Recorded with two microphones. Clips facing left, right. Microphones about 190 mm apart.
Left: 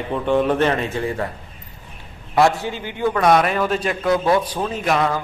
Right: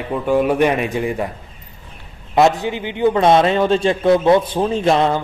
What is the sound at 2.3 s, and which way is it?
A man's voice, 20° right (ahead or behind).